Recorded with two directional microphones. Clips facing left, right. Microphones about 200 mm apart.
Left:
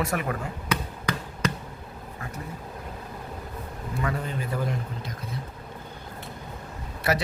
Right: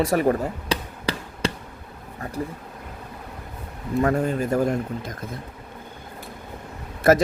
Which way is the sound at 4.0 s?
50° right (ahead or behind).